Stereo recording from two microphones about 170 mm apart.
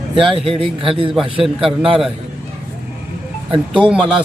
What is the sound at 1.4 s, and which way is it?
Speech, 5° right (ahead or behind).